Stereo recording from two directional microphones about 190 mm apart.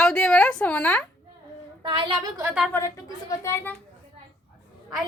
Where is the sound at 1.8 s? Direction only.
25° right (ahead or behind).